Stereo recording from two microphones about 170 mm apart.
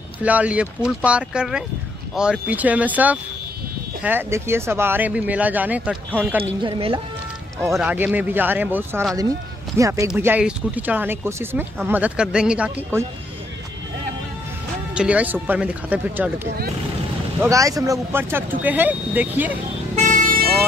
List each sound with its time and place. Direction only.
0.2 s speech: 10° right (ahead or behind)
6.6 s speech: 30° right (ahead or behind)
7.8 s speech: 10° right (ahead or behind)
15.0 s speech: 10° right (ahead or behind)
17.4 s speech: 20° right (ahead or behind)
20.0 s vehicle: 50° right (ahead or behind)